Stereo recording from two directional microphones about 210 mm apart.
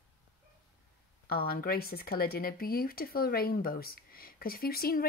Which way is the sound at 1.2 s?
45° left (ahead or behind).